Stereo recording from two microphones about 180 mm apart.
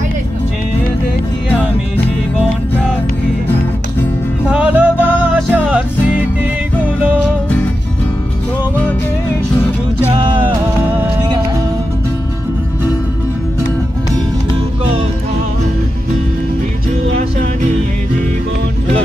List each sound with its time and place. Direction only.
4.5 s music: 5° right (ahead or behind)
7.4 s music: 10° left (ahead or behind)
10.2 s music: 25° right (ahead or behind)
17.1 s music: 40° right (ahead or behind)